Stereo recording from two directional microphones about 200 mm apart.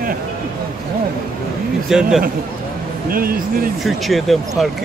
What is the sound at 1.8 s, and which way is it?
Speech, centre (ahead or behind).